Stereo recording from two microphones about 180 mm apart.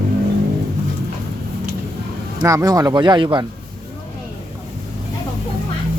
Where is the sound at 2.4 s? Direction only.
20° right (ahead or behind).